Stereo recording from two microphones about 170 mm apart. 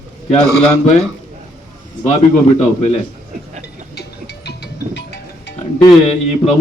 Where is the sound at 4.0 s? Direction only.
80° left.